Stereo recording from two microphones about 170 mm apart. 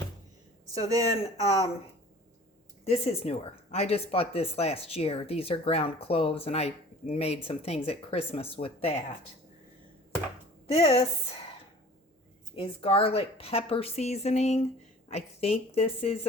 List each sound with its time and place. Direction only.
1.2 s speech: 35° left (ahead or behind)
2.8 s speech: 40° left (ahead or behind)
10.7 s speech: 35° left (ahead or behind)
12.5 s speech: 35° left (ahead or behind)